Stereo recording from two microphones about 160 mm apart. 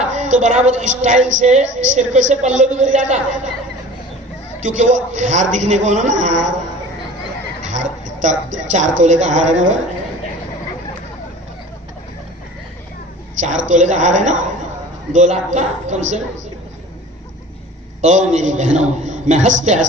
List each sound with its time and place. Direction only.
0.1 s a woman's voice: 50° right (ahead or behind)
4.6 s a woman's voice: 50° right (ahead or behind)
7.6 s a woman's voice: 50° right (ahead or behind)
13.4 s a woman's voice: 50° right (ahead or behind)
18.0 s a woman's voice: 45° right (ahead or behind)